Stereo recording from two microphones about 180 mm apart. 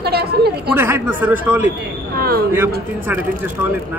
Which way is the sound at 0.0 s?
60° right (ahead or behind).